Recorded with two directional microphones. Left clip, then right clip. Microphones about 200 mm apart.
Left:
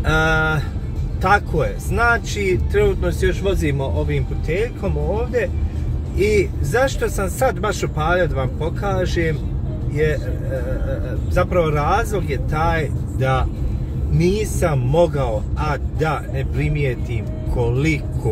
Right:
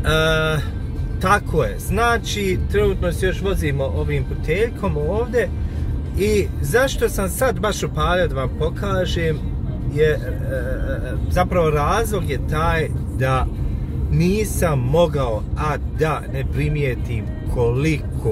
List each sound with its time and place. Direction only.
0.0 s music: 20° right (ahead or behind)
1.2 s speech: 25° right (ahead or behind)
11.5 s speech: 25° right (ahead or behind)